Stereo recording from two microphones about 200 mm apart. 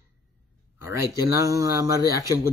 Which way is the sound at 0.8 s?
15° right (ahead or behind).